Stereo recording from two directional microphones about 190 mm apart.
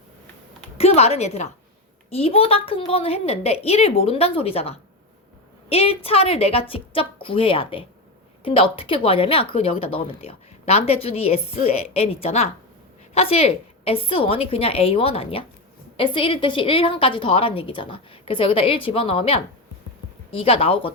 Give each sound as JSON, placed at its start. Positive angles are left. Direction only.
{"t": 0.8, "sound": "a woman's voice", "side_deg": 35}
{"t": 20.4, "sound": "a woman's voice", "side_deg": 30}